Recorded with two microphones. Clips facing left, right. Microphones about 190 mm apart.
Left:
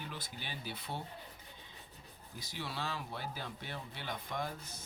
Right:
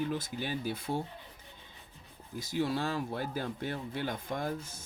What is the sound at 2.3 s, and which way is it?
Speech, 45° right (ahead or behind).